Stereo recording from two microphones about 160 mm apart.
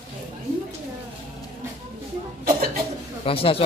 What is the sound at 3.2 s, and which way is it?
Speech, 35° left (ahead or behind).